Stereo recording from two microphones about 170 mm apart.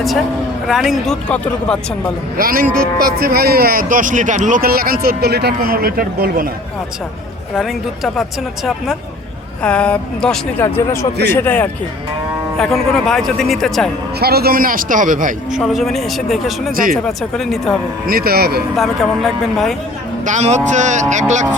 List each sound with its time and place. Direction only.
0.7 s speech: centre (ahead or behind)
2.4 s a man's voice: 60° right (ahead or behind)
7.5 s speech: centre (ahead or behind)
10.6 s speech: 15° left (ahead or behind)
14.2 s a man's voice: 65° right (ahead or behind); by 15.4 s 50° right (ahead or behind)
15.5 s speech: centre (ahead or behind)
16.7 s a man's voice: 55° right (ahead or behind)
17.1 s speech: centre (ahead or behind)
18.0 s a man's voice: 60° right (ahead or behind)
18.8 s speech: centre (ahead or behind)
20.2 s speech: 45° right (ahead or behind)